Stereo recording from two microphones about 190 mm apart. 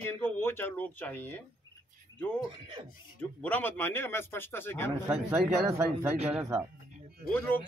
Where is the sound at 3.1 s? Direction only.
10° left (ahead or behind).